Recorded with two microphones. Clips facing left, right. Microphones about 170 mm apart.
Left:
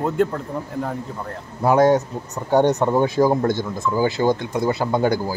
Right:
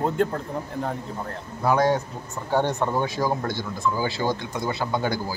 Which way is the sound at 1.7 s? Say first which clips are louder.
Left 8 dB; 45° left (ahead or behind).